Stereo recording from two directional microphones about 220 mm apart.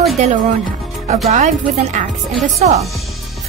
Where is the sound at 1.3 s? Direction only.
30° right (ahead or behind).